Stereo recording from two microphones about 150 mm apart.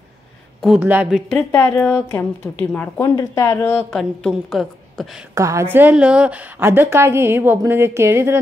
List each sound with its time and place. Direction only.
0.7 s a woman's voice: 10° right (ahead or behind)
1.5 s a woman's voice: 15° left (ahead or behind)
3.9 s a woman's voice: centre (ahead or behind)
5.3 s a woman's voice: 20° right (ahead or behind)